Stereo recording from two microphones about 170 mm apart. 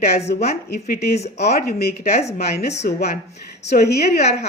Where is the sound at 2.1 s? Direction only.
40° left (ahead or behind).